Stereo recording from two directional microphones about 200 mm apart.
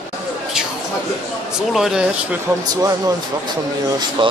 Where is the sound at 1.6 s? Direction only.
Centre (ahead or behind).